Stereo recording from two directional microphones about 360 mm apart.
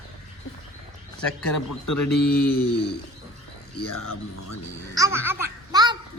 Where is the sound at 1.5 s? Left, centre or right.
Left.